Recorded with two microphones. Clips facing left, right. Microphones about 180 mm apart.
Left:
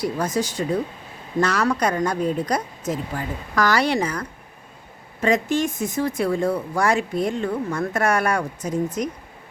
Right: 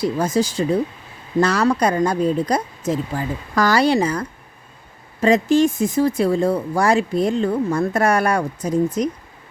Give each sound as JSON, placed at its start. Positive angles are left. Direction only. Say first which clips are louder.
{"t": 0.0, "sound": "speech", "louder": "right 4 dB", "side_deg": -25}